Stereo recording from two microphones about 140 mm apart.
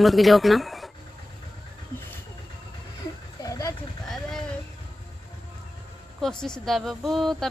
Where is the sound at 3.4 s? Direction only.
25° left (ahead or behind).